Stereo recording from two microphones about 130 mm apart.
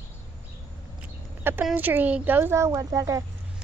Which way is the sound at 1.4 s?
15° right (ahead or behind).